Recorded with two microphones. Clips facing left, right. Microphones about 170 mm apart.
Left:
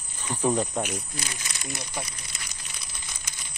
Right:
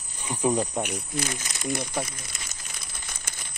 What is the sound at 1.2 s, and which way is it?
Crumpling, 50° right (ahead or behind).